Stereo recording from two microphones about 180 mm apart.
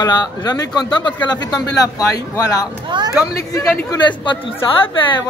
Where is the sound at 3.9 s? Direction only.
25° left (ahead or behind).